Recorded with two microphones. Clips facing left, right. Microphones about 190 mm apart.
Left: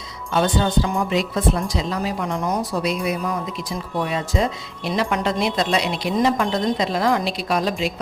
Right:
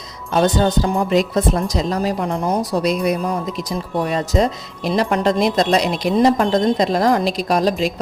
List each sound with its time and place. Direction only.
0.3 s speech: 40° right (ahead or behind)